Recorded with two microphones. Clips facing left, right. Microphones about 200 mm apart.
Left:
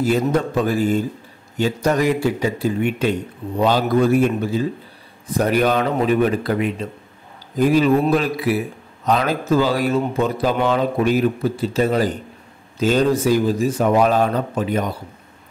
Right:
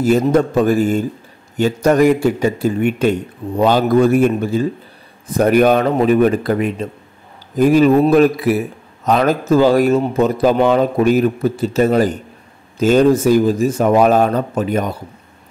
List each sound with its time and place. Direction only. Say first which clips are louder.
0.0 s a man's voice: right 5 dB; 45° right (ahead or behind)